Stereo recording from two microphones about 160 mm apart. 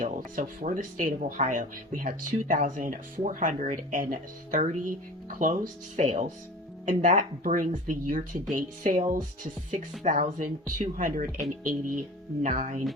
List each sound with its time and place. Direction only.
0.0 s speech: 55° right (ahead or behind)